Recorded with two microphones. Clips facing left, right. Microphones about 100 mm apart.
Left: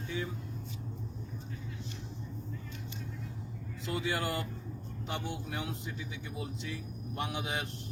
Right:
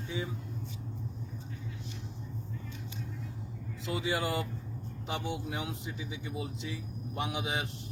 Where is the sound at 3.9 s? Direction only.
15° right (ahead or behind).